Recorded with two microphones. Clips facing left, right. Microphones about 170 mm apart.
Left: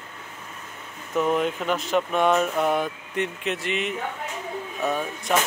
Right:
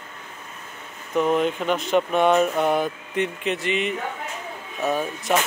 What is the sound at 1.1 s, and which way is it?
Speech, centre (ahead or behind).